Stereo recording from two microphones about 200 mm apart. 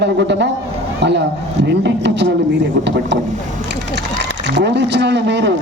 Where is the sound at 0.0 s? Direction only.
60° right (ahead or behind).